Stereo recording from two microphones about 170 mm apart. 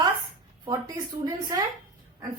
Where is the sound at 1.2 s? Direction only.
25° right (ahead or behind).